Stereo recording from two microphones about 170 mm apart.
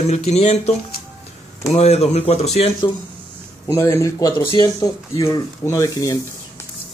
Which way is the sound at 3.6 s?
15° left (ahead or behind).